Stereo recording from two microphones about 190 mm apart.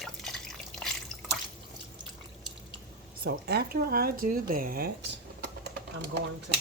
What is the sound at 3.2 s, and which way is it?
Speech, 55° right (ahead or behind).